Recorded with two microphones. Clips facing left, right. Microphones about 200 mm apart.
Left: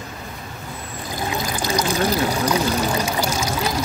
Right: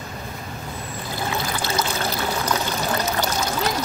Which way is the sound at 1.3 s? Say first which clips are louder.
Left 3 dB; 15° left (ahead or behind).